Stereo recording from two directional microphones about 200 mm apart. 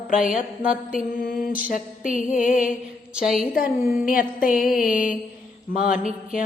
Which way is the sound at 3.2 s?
Centre (ahead or behind).